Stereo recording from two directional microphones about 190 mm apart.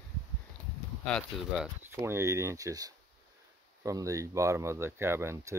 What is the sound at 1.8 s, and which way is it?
Speech, 15° right (ahead or behind).